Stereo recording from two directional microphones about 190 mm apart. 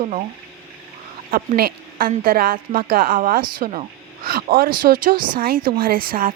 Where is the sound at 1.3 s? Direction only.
50° right (ahead or behind).